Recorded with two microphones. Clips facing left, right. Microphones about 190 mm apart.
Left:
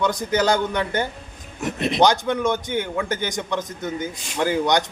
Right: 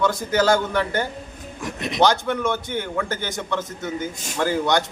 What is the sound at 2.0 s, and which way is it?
A man's voice, 15° left (ahead or behind).